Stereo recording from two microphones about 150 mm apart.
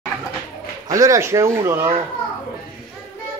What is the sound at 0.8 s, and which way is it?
Speech, 20° right (ahead or behind).